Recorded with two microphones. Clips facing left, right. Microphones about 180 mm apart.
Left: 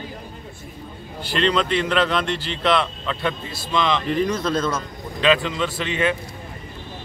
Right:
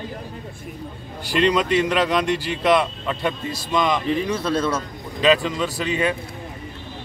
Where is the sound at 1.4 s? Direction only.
10° right (ahead or behind).